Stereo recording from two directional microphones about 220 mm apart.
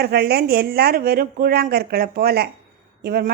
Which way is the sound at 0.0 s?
45° right (ahead or behind).